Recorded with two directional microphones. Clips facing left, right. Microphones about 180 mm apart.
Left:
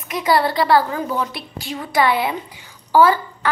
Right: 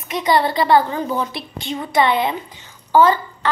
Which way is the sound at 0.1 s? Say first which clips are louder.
Even; 5° left (ahead or behind).